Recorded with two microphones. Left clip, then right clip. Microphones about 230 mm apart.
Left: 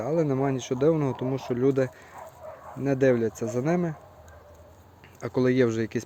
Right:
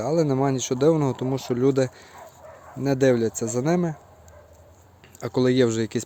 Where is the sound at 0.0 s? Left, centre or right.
Right.